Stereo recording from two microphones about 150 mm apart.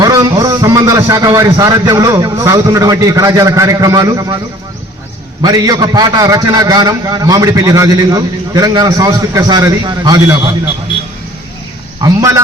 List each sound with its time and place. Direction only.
0.0 s a man's voice: 25° right (ahead or behind)
5.4 s a man's voice: 25° right (ahead or behind)
12.0 s a man's voice: 20° right (ahead or behind)